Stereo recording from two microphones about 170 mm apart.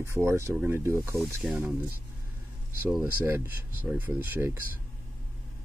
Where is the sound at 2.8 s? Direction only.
10° right (ahead or behind).